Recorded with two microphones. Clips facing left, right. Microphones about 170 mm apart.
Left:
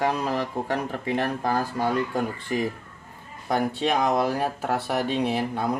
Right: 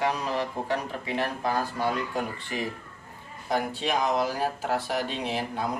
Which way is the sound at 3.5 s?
55° left (ahead or behind).